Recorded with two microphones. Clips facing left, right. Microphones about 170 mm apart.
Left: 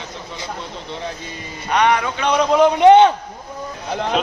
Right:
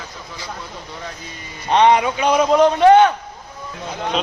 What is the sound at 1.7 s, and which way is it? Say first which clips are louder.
Speech: right 3 dB; 25° right (ahead or behind).